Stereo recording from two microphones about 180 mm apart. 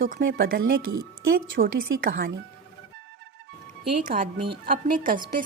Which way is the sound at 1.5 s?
50° right (ahead or behind).